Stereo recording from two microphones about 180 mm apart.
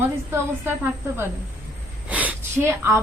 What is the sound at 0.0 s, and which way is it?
Speech, 10° right (ahead or behind).